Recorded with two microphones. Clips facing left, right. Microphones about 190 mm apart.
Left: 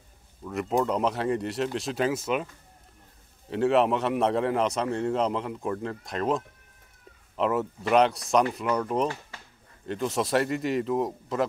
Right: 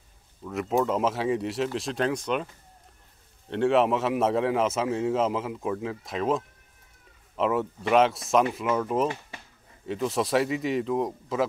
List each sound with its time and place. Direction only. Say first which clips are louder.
0.4 s a man's voice: right 1 dB; centre (ahead or behind)
3.4 s a man's voice: even; centre (ahead or behind)
9.0 s speech: right 1 dB; 15° right (ahead or behind)
9.8 s a man's voice: right 1 dB; centre (ahead or behind)